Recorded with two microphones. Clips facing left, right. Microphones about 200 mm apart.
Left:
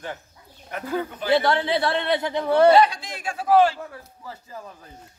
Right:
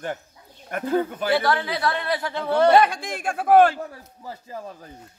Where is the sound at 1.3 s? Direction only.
25° left (ahead or behind).